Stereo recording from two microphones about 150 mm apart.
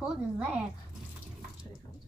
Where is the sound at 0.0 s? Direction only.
5° right (ahead or behind).